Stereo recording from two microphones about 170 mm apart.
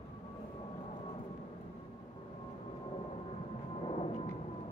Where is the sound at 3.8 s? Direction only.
35° left (ahead or behind).